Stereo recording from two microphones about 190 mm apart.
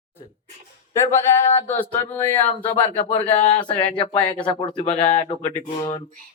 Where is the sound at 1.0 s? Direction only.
15° left (ahead or behind).